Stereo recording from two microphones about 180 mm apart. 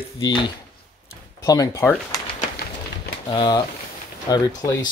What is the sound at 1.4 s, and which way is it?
Speech, 20° left (ahead or behind).